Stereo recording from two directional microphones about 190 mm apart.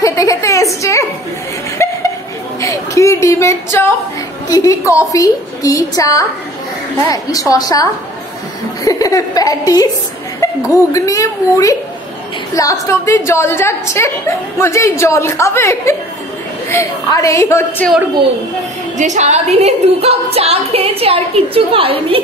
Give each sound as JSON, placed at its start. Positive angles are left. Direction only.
{"t": 0.0, "sound": "a sound", "side_deg": 15}
{"t": 4.5, "sound": "a woman's voice", "side_deg": 15}
{"t": 18.9, "sound": "a woman's voice", "side_deg": -40}